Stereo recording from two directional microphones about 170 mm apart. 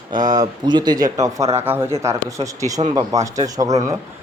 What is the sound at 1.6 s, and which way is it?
A man's voice, 10° right (ahead or behind).